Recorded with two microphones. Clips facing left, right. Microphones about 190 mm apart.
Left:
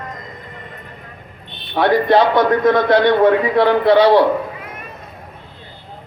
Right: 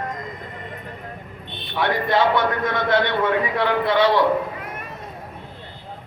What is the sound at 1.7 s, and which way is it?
A man's voice, 40° left (ahead or behind).